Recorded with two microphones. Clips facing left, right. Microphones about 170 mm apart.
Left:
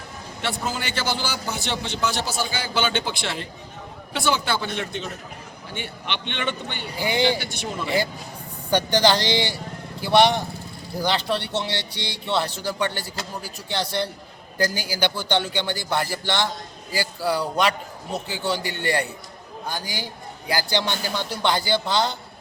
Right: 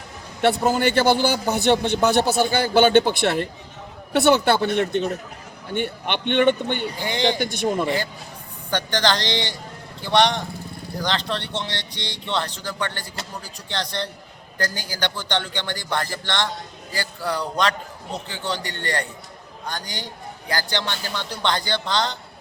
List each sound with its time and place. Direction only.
0.4 s a man's voice: 55° right (ahead or behind)
6.9 s speech: 10° left (ahead or behind)
7.3 s speech: 55° right (ahead or behind)
8.7 s speech: 10° left (ahead or behind)